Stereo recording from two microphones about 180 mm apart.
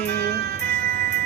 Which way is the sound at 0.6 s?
65° right (ahead or behind).